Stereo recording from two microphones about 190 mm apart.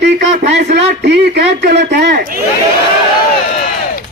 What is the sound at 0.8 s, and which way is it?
A man's voice, 60° right (ahead or behind).